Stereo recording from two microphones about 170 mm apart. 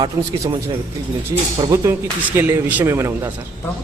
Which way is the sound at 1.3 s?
20° right (ahead or behind).